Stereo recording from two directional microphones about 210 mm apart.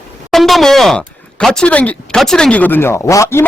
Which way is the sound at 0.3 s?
Centre (ahead or behind).